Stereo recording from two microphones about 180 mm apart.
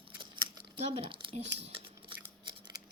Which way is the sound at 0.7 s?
35° right (ahead or behind).